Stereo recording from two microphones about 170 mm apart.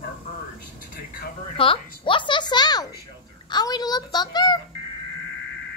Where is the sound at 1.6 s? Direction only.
30° left (ahead or behind).